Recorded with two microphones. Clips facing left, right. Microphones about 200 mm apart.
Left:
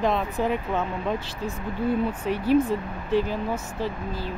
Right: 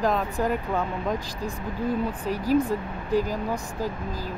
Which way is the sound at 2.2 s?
40° right (ahead or behind).